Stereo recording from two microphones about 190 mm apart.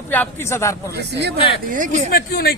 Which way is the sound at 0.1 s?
10° left (ahead or behind).